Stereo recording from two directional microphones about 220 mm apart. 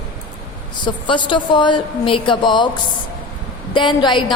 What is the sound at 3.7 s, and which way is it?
Speech, 20° left (ahead or behind).